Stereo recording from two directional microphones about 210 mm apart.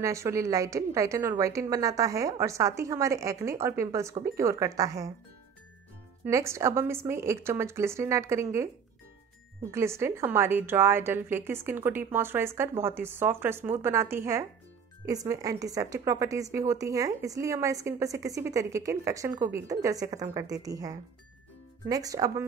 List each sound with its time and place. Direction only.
0.0 s a woman's voice: 15° right (ahead or behind)
6.2 s a woman's voice: 15° right (ahead or behind)
9.7 s a woman's voice: 15° right (ahead or behind)